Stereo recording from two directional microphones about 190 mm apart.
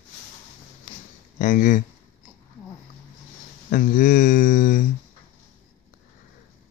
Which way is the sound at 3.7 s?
45° left (ahead or behind).